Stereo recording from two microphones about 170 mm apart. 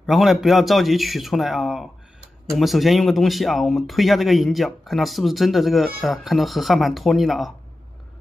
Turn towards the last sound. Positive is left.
turn(degrees=0)  # may be behind; listen again after turning